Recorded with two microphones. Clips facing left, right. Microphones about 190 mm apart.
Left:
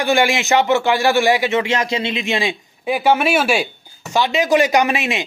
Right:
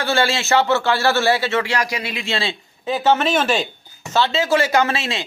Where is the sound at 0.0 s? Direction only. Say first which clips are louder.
Left 3 dB; 15° left (ahead or behind).